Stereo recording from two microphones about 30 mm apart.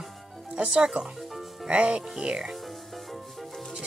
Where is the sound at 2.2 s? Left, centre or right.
Right.